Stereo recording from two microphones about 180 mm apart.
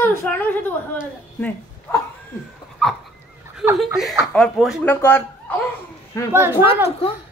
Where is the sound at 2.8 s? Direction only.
Centre (ahead or behind).